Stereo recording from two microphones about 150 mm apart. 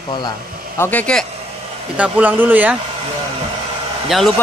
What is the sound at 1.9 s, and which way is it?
Speech, 10° right (ahead or behind).